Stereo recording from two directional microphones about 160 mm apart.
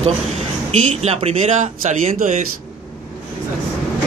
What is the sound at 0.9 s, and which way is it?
Speech, 40° right (ahead or behind).